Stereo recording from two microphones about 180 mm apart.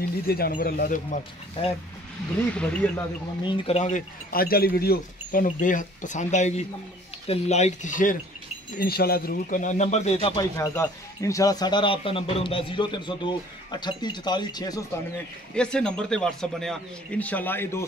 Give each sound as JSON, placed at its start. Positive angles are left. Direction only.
{"t": 0.3, "sound": "speech", "side_deg": 55}
{"t": 2.5, "sound": "speech", "side_deg": 5}
{"t": 3.4, "sound": "speech", "side_deg": 35}
{"t": 4.3, "sound": "speech", "side_deg": 55}
{"t": 8.7, "sound": "speech", "side_deg": 60}
{"t": 10.4, "sound": "speech", "side_deg": 20}
{"t": 15.5, "sound": "speech", "side_deg": 5}